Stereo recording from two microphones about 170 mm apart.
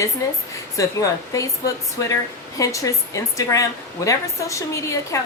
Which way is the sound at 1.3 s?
20° left (ahead or behind).